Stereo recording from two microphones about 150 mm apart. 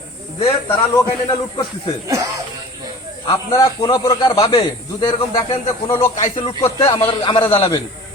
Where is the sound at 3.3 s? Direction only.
25° left (ahead or behind).